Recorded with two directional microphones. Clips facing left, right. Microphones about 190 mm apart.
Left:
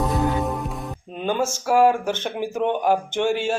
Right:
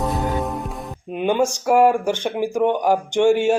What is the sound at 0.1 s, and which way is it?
Music, centre (ahead or behind).